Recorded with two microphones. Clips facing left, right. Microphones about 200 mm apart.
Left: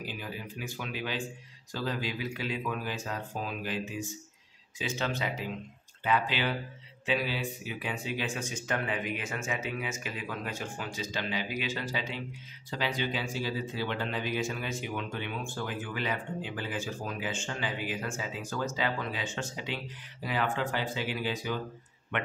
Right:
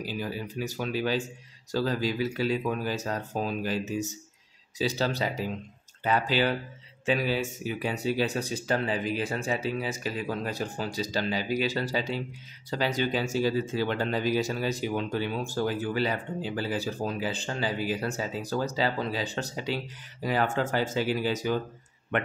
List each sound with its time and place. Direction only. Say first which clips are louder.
0.0 s speech: right 6 dB; 40° right (ahead or behind)